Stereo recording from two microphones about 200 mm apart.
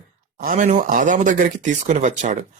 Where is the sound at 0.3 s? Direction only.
40° right (ahead or behind).